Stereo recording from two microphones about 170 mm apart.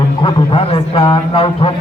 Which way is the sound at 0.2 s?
30° left (ahead or behind).